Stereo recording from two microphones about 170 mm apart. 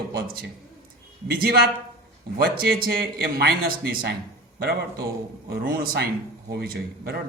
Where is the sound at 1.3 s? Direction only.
65° right (ahead or behind).